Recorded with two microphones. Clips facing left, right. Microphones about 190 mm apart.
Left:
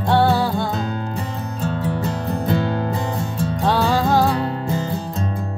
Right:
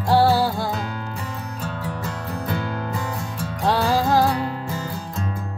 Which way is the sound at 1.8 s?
30° left (ahead or behind).